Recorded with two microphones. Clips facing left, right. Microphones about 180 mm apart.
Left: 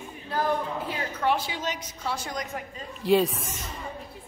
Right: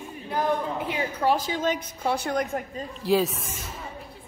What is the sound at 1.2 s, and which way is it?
A woman's voice, 40° right (ahead or behind).